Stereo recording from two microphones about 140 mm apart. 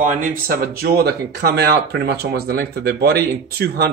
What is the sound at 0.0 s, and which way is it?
Speech, 75° right (ahead or behind).